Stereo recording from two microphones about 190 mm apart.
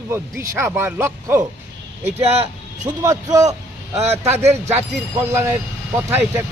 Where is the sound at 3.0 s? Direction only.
15° right (ahead or behind).